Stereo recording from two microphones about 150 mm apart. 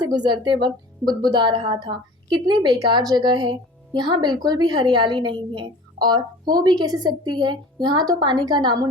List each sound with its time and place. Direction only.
0.2 s a woman's voice: 30° right (ahead or behind)